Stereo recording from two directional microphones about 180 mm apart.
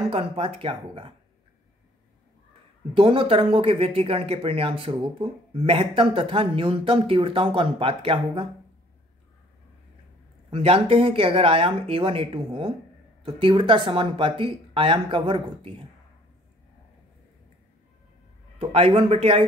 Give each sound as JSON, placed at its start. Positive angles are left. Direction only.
{"t": 0.1, "sound": "speech", "side_deg": -30}
{"t": 2.9, "sound": "speech", "side_deg": -30}
{"t": 10.5, "sound": "speech", "side_deg": -30}
{"t": 18.6, "sound": "speech", "side_deg": -35}